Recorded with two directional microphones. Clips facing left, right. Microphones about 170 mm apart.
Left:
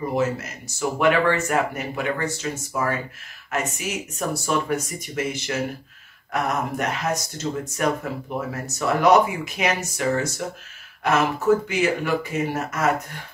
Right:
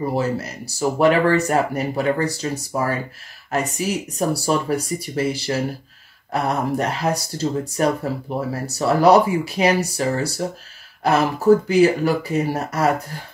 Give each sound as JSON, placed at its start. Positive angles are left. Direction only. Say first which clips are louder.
{"t": 0.1, "sound": "speech", "louder": "right 1 dB", "side_deg": -35}